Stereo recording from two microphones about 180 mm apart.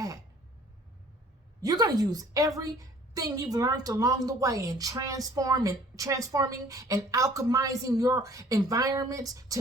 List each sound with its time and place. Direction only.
1.6 s a woman's voice: 20° right (ahead or behind)